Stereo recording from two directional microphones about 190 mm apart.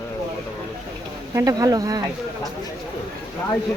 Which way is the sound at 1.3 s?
15° right (ahead or behind).